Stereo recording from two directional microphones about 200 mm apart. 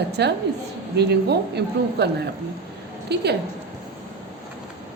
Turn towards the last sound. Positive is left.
turn(degrees=-55)  # may be behind; listen again after turning